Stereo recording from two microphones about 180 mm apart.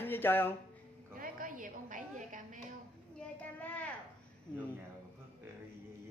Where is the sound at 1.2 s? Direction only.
50° right (ahead or behind).